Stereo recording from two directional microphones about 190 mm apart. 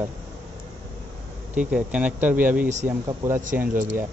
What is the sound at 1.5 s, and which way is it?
Speech, 5° right (ahead or behind).